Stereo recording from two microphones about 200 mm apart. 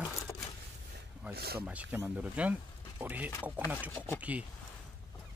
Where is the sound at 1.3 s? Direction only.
50° right (ahead or behind).